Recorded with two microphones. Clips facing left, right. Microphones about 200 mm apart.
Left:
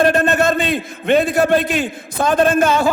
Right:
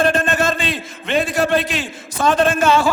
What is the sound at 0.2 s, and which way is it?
A man's voice, 60° left (ahead or behind).